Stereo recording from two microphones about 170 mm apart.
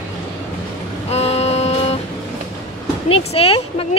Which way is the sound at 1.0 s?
40° left (ahead or behind).